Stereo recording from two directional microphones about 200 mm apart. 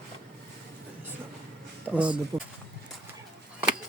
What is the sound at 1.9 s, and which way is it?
Speech, 5° right (ahead or behind).